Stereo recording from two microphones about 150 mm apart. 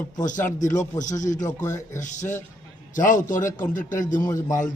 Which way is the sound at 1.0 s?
55° left (ahead or behind).